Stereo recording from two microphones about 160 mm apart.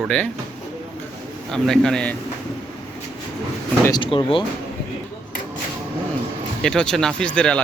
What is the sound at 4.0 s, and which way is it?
Speech, 30° left (ahead or behind).